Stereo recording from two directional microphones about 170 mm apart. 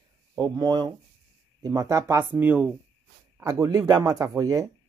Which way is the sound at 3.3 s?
20° right (ahead or behind).